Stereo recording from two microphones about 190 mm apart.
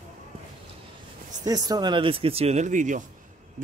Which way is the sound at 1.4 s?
20° right (ahead or behind).